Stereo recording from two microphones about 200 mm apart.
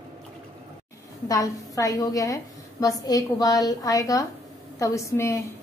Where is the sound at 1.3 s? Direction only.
15° left (ahead or behind).